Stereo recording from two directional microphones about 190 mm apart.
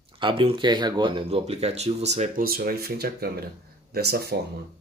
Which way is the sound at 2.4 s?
50° right (ahead or behind).